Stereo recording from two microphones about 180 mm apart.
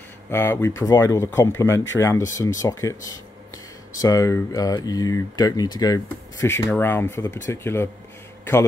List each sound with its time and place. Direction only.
0.3 s speech: 15° left (ahead or behind)